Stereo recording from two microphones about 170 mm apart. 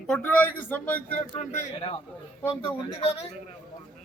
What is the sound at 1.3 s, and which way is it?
Speech, 40° left (ahead or behind).